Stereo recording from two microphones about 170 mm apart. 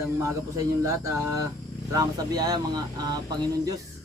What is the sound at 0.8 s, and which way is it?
Speech, 20° right (ahead or behind).